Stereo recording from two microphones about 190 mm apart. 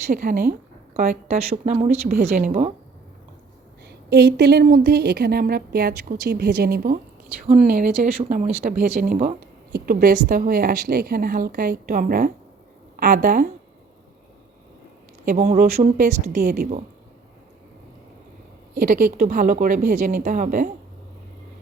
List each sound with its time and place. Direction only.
0.1 s a woman's voice: 45° right (ahead or behind)
3.8 s a woman's voice: 60° right (ahead or behind)
15.2 s speech: 45° right (ahead or behind)
18.7 s a woman's voice: 45° right (ahead or behind)